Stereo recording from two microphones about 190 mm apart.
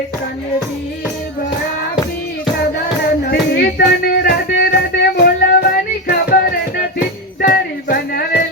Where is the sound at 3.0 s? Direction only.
55° left (ahead or behind).